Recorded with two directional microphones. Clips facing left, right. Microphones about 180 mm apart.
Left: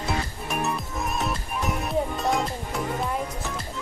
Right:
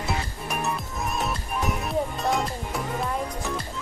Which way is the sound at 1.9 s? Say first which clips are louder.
Left 2 dB; centre (ahead or behind).